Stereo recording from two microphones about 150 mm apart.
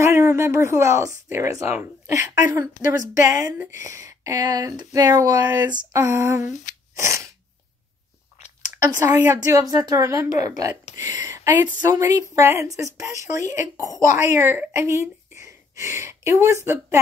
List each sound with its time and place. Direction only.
0.0 s a woman's voice: 20° right (ahead or behind)
6.7 s a sound: 60° left (ahead or behind)
7.0 s a woman's voice: 20° right (ahead or behind)
8.6 s a woman's voice: 20° right (ahead or behind)